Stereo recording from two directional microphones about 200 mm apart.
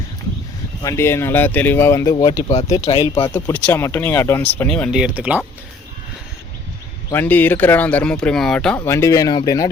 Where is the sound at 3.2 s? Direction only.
10° left (ahead or behind); by 5.4 s 5° right (ahead or behind).